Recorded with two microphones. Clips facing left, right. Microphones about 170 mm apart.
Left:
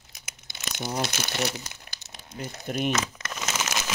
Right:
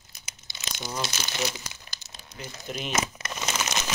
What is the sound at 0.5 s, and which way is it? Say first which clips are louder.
Speech: left 4 dB; 60° left (ahead or behind).